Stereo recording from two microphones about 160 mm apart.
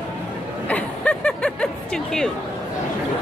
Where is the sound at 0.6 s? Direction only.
10° left (ahead or behind).